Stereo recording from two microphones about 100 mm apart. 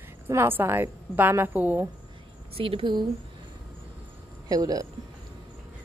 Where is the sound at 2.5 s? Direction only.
65° right (ahead or behind); by 3.1 s 50° right (ahead or behind).